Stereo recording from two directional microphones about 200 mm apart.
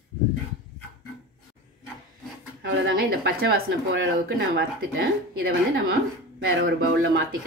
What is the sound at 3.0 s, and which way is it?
Speech, 50° right (ahead or behind).